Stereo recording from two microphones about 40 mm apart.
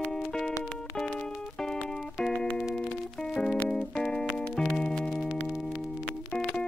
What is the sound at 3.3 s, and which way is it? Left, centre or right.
Music, left.